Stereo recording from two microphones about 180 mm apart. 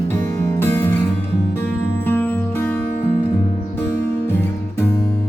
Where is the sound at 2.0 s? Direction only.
10° left (ahead or behind).